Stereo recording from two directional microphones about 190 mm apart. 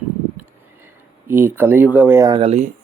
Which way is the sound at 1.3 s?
10° right (ahead or behind).